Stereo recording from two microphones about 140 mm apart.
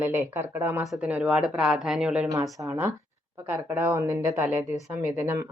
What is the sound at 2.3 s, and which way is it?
A woman's voice, 25° right (ahead or behind).